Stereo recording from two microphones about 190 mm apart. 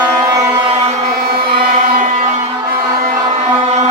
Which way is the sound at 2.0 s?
40° right (ahead or behind).